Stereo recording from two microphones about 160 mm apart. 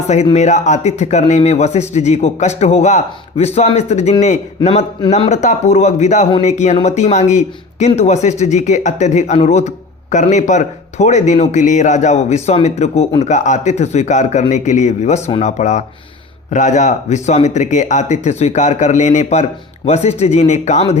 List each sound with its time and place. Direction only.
0.3 s speech: 45° left (ahead or behind)